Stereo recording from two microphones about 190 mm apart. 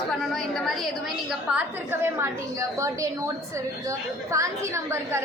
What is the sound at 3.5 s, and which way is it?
A woman's voice, 15° right (ahead or behind).